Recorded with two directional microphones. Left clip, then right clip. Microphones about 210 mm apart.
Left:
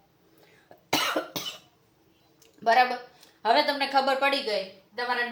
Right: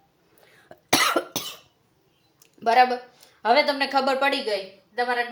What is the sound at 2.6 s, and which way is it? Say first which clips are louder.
A woman's voice: right 3 dB; 45° right (ahead or behind).